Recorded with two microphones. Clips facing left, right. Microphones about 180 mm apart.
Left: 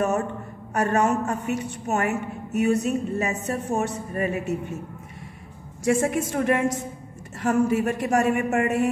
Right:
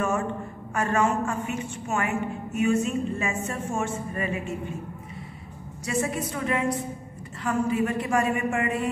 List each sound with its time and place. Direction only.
0.0 s a sound: 40° left (ahead or behind)
0.7 s a woman's voice: 40° left (ahead or behind)
5.9 s a man's voice: 50° left (ahead or behind)